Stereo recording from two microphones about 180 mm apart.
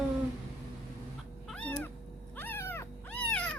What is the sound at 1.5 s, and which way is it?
Cat, 5° left (ahead or behind).